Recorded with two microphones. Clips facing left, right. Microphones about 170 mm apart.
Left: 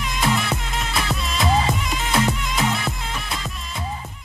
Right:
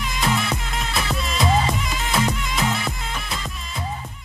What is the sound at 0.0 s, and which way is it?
Music, centre (ahead or behind).